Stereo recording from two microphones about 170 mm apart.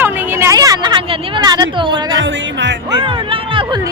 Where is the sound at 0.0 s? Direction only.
10° right (ahead or behind).